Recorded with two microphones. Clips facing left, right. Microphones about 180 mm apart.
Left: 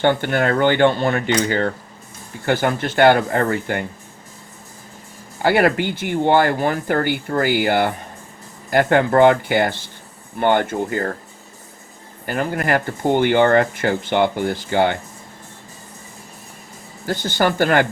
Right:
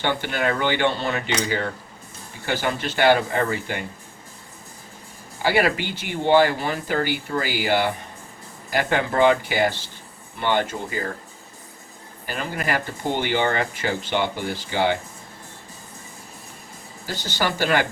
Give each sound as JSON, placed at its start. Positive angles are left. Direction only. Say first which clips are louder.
{"t": 0.0, "sound": "speech", "louder": "left 6 dB", "side_deg": 50}
{"t": 5.4, "sound": "speech", "louder": "left 5 dB", "side_deg": 55}
{"t": 12.2, "sound": "speech", "louder": "left 6 dB", "side_deg": 55}
{"t": 17.1, "sound": "speech", "louder": "left 6 dB", "side_deg": 55}